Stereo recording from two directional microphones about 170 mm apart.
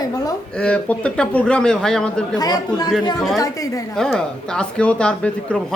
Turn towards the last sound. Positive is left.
turn(degrees=5)  # may be behind; listen again after turning